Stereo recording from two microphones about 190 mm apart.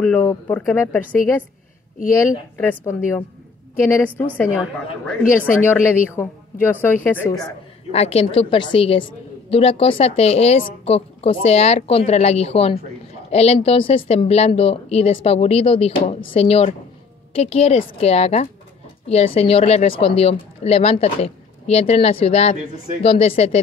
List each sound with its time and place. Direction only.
0.0 s speech: 10° left (ahead or behind)
2.1 s speech: 10° left (ahead or behind)
5.6 s speech: 10° left (ahead or behind)
7.9 s a woman's voice: 35° left (ahead or behind)